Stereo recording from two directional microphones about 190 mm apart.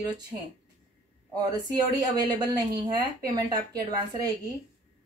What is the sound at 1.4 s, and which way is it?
A woman's voice, 20° right (ahead or behind).